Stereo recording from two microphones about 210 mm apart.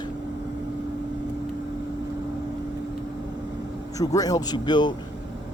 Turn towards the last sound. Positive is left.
turn(degrees=20)  # may be behind; listen again after turning